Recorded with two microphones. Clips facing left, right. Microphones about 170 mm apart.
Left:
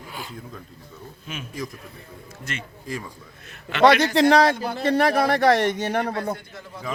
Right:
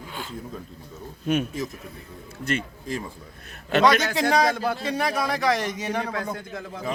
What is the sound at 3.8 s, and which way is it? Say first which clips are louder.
A man's voice: left 4 dB; 65° left (ahead or behind).